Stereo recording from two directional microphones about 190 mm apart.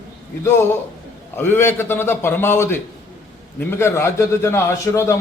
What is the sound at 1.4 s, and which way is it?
A man's voice, 10° left (ahead or behind).